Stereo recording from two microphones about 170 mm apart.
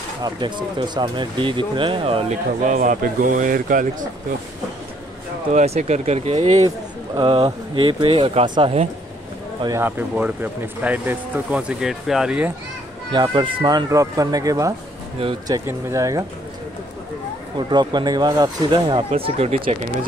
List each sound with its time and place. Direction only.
0.2 s speech: 25° right (ahead or behind)
2.6 s a man's voice: 50° right (ahead or behind)
5.5 s speech: 45° right (ahead or behind)
7.2 s speech: 30° right (ahead or behind)
9.6 s speech: 15° right (ahead or behind)
13.1 s speech: 25° right (ahead or behind)
17.6 s speech: 25° right (ahead or behind)